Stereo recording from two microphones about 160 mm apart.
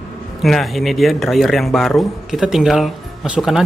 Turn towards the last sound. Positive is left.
turn(degrees=0)  # may be behind; listen again after turning